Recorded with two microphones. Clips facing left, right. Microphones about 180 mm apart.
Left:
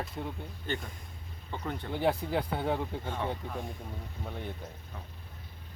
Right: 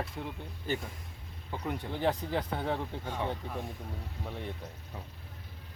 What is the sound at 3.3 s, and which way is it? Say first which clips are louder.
Speech: even; centre (ahead or behind).